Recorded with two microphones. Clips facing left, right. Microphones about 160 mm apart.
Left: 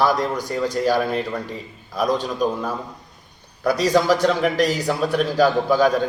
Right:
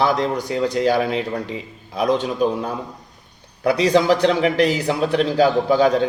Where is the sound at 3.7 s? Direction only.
20° right (ahead or behind).